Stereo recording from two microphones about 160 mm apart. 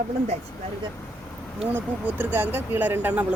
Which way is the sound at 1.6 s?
10° right (ahead or behind).